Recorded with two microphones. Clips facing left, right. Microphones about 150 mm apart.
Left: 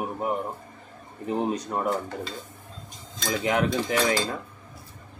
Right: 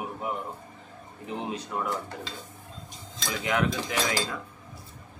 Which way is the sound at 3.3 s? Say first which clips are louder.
Left 3 dB; 35° left (ahead or behind).